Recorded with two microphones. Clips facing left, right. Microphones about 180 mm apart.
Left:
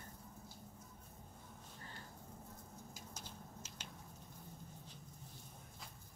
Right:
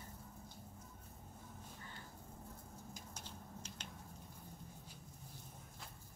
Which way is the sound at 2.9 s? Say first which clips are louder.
Even; 10° left (ahead or behind).